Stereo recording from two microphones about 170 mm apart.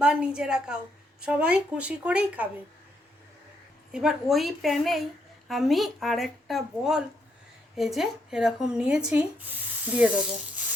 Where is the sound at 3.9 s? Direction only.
5° right (ahead or behind).